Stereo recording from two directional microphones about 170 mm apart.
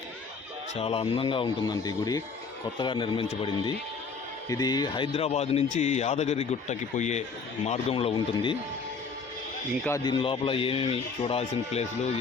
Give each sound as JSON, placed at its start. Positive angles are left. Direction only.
{"t": 0.8, "sound": "speech", "side_deg": 35}
{"t": 4.4, "sound": "a man's voice", "side_deg": 20}
{"t": 10.0, "sound": "a man's voice", "side_deg": 30}